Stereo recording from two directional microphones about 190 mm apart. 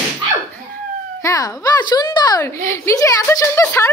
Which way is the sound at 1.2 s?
20° left (ahead or behind).